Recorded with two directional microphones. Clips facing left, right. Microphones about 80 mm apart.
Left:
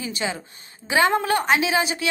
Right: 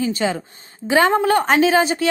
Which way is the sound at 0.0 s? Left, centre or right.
Right.